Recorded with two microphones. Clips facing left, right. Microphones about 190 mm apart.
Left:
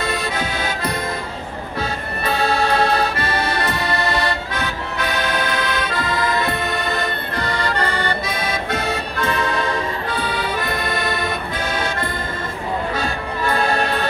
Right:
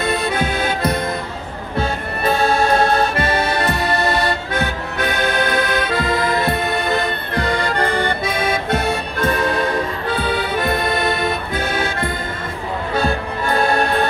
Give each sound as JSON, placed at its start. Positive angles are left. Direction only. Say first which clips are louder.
{"t": 0.0, "sound": "accordion", "louder": "right 4 dB", "side_deg": -55}
{"t": 13.6, "sound": "music", "louder": "right 4 dB", "side_deg": -50}